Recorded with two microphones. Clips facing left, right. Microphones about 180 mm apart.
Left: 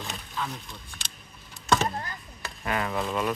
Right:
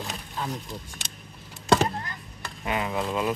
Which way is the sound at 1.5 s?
30° right (ahead or behind).